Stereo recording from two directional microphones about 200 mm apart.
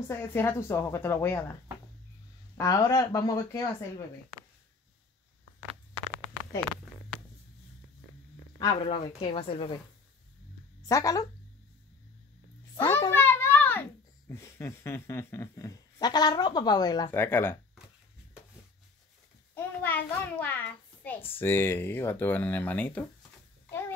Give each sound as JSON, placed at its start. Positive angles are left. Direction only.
{"t": 0.1, "sound": "speech", "side_deg": 10}
{"t": 4.3, "sound": "a sound", "side_deg": 0}
{"t": 8.5, "sound": "a woman's voice", "side_deg": 25}
{"t": 10.9, "sound": "speech", "side_deg": 15}
{"t": 12.7, "sound": "a child's voice", "side_deg": 15}
{"t": 19.5, "sound": "a child's voice", "side_deg": 10}